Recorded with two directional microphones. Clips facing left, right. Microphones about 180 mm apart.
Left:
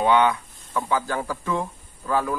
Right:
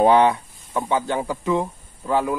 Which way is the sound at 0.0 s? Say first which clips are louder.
Right 4 dB; 35° right (ahead or behind).